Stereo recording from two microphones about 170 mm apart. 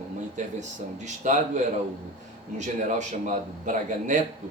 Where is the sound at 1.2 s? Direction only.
45° right (ahead or behind).